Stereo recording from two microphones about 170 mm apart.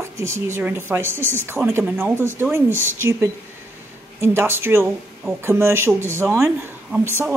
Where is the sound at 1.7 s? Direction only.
10° right (ahead or behind).